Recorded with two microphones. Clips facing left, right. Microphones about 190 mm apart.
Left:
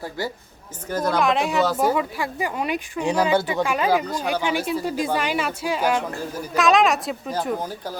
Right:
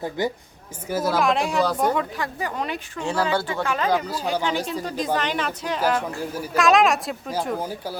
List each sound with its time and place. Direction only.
0.2 s speech: 20° right (ahead or behind)
0.9 s speech: 5° right (ahead or behind); by 6.0 s 10° left (ahead or behind)
6.3 s speech: 5° right (ahead or behind)